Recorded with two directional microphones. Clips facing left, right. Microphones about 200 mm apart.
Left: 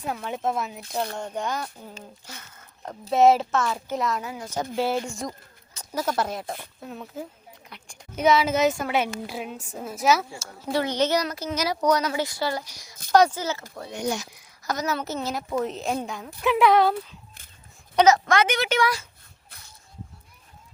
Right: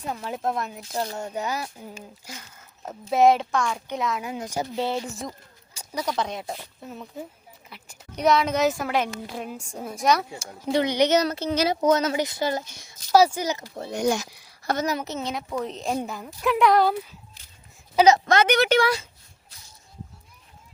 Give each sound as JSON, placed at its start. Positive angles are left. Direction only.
{"t": 0.0, "sound": "a woman's voice", "side_deg": 0}
{"t": 4.2, "sound": "speech", "side_deg": -15}
{"t": 4.7, "sound": "a woman's voice", "side_deg": 0}
{"t": 10.3, "sound": "speech", "side_deg": -15}
{"t": 11.2, "sound": "speech", "side_deg": -30}
{"t": 13.1, "sound": "speech", "side_deg": -5}
{"t": 13.9, "sound": "speech", "side_deg": -45}
{"t": 14.3, "sound": "a sound", "side_deg": -30}
{"t": 15.0, "sound": "a woman's voice", "side_deg": 0}
{"t": 18.4, "sound": "speech", "side_deg": -65}
{"t": 18.7, "sound": "speech", "side_deg": -30}